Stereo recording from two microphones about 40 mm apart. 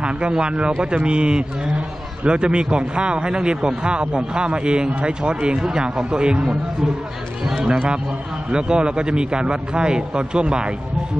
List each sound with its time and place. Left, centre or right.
0.0 s a man's voice: right
8.5 s a man's voice: right